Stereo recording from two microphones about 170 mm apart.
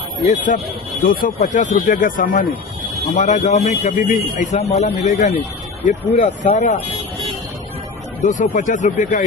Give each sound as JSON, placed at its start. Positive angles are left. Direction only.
{"t": 1.0, "sound": "speech", "side_deg": 55}
{"t": 8.2, "sound": "speech", "side_deg": 45}